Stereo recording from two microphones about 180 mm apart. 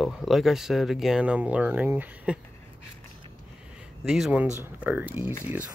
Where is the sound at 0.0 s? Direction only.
Centre (ahead or behind).